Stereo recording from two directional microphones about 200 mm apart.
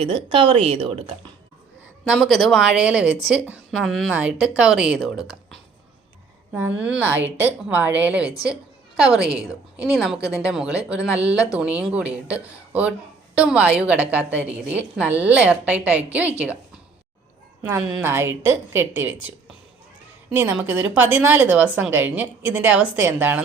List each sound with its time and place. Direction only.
0.0 s a woman's voice: 25° right (ahead or behind)
2.0 s speech: centre (ahead or behind)
6.7 s a woman's voice: 5° right (ahead or behind)
17.6 s a woman's voice: 10° right (ahead or behind)
20.3 s a woman's voice: 10° right (ahead or behind)